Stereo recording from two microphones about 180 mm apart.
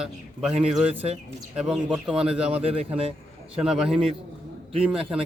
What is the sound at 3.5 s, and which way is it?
A man's voice, 5° right (ahead or behind).